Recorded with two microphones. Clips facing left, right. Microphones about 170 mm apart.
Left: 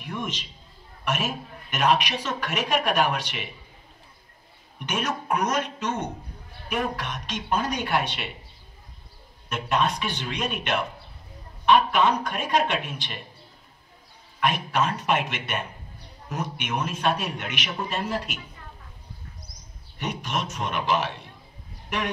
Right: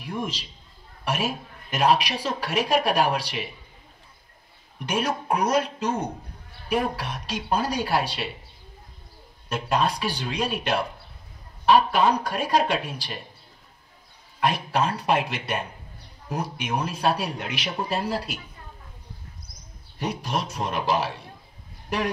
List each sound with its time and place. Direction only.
0.0 s speech: 30° right (ahead or behind)
4.7 s speech: 35° right (ahead or behind)
9.5 s speech: 35° right (ahead or behind)
14.4 s speech: 35° right (ahead or behind)
20.0 s a man's voice: 35° right (ahead or behind)